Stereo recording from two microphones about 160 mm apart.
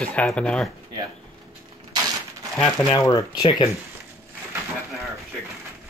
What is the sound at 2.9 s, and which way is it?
Speech, 25° left (ahead or behind).